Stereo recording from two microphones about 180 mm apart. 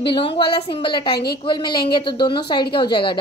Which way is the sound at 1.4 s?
25° left (ahead or behind).